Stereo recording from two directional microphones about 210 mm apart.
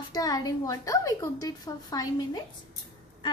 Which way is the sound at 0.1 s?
20° left (ahead or behind).